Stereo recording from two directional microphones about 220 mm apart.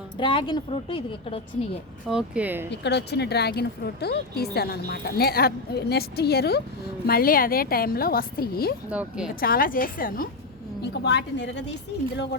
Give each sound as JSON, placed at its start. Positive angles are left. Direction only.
{"t": 0.2, "sound": "a woman's voice", "side_deg": 20}
{"t": 2.0, "sound": "speech", "side_deg": -5}
{"t": 2.6, "sound": "a woman's voice", "side_deg": 50}
{"t": 8.9, "sound": "speech", "side_deg": -5}
{"t": 9.3, "sound": "a woman's voice", "side_deg": 40}
{"t": 10.9, "sound": "a woman's voice", "side_deg": 50}